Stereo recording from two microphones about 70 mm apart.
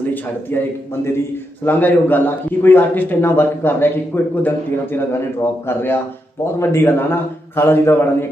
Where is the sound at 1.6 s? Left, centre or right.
Left.